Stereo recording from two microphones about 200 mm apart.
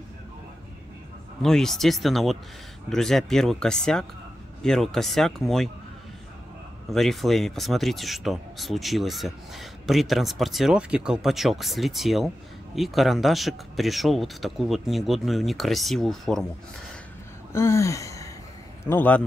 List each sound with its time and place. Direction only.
1.4 s speech: centre (ahead or behind)
6.9 s speech: centre (ahead or behind)
17.5 s gasp: 15° left (ahead or behind)
18.9 s a man's voice: 10° left (ahead or behind)